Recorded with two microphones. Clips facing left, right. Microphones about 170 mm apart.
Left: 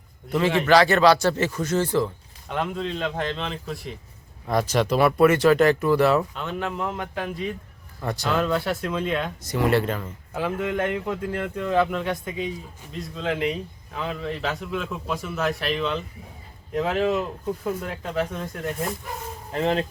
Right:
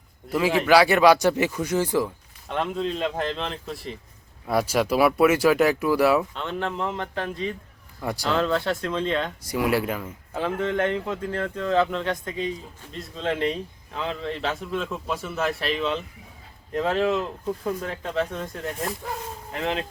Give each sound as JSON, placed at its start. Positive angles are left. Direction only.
{"t": 0.3, "sound": "speech", "side_deg": -5}
{"t": 2.5, "sound": "speech", "side_deg": 0}
{"t": 6.3, "sound": "speech", "side_deg": 5}
{"t": 8.0, "sound": "speech", "side_deg": -10}
{"t": 8.3, "sound": "speech", "side_deg": 5}
{"t": 9.4, "sound": "speech", "side_deg": -10}
{"t": 10.3, "sound": "speech", "side_deg": 5}
{"t": 19.5, "sound": "speech", "side_deg": 35}